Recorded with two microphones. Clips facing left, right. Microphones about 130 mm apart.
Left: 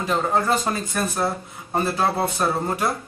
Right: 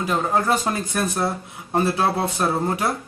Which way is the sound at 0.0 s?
5° right (ahead or behind).